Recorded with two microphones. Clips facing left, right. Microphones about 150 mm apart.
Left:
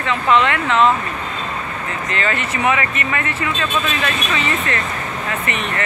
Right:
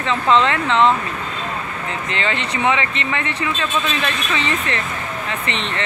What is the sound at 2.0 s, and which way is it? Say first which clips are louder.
Speech: left 2 dB; 20° right (ahead or behind).